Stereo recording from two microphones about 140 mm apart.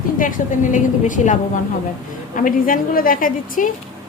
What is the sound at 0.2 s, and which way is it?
A woman's voice, 70° left (ahead or behind).